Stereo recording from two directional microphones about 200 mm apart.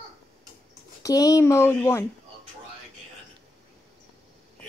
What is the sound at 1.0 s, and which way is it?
Speech, 20° left (ahead or behind).